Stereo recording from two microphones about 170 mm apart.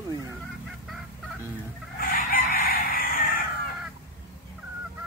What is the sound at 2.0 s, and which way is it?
Chicken, 55° left (ahead or behind).